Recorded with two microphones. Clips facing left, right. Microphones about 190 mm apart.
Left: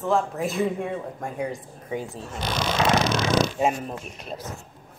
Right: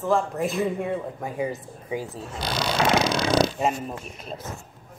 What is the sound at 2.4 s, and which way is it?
Speech, 35° right (ahead or behind).